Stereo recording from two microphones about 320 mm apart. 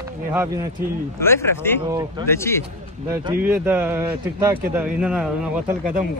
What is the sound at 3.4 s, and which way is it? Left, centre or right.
Speech, centre.